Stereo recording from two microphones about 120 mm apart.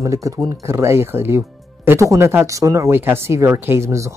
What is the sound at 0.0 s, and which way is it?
Speech, 25° right (ahead or behind).